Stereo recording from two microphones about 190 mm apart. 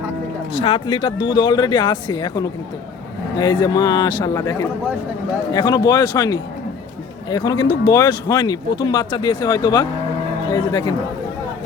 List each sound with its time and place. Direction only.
0.5 s a man's voice: 30° left (ahead or behind)